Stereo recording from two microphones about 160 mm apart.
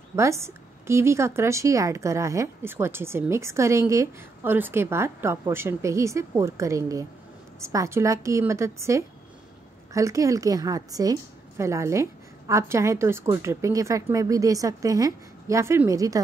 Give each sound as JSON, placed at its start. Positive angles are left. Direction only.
{"t": 0.1, "sound": "a woman's voice", "side_deg": -20}